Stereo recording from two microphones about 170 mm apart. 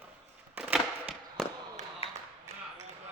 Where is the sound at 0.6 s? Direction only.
10° right (ahead or behind).